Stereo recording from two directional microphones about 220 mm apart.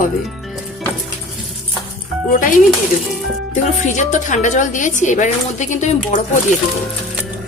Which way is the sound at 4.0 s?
35° left (ahead or behind).